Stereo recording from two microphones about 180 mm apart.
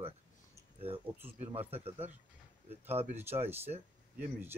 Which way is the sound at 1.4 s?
35° right (ahead or behind).